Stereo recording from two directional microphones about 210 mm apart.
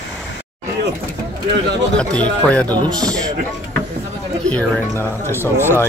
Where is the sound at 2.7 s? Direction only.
20° right (ahead or behind).